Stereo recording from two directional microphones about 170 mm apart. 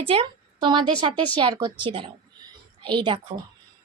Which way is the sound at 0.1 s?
30° right (ahead or behind).